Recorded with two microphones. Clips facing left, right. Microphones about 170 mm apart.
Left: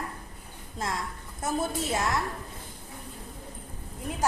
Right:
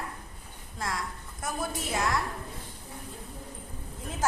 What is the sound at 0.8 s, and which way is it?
A woman's voice, 20° left (ahead or behind).